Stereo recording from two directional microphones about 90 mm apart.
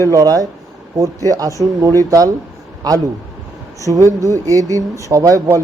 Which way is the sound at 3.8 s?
40° right (ahead or behind).